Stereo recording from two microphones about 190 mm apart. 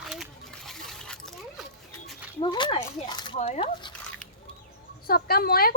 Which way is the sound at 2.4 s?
25° left (ahead or behind).